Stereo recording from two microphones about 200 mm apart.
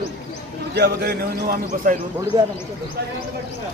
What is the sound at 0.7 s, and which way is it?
A man's voice, 55° right (ahead or behind).